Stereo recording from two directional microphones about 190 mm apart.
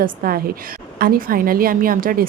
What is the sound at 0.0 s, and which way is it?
Speech, 50° right (ahead or behind).